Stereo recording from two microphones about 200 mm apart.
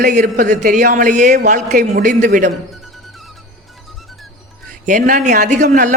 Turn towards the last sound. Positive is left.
turn(degrees=-40)  # may be behind; listen again after turning